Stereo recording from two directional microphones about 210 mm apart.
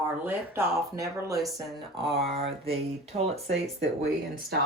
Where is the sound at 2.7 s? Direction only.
30° right (ahead or behind).